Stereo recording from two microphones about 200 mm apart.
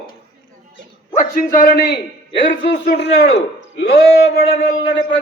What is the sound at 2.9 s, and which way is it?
A man's voice, 60° left (ahead or behind).